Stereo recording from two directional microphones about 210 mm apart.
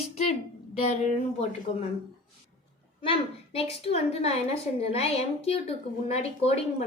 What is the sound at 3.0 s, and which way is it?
A woman's voice, 25° left (ahead or behind).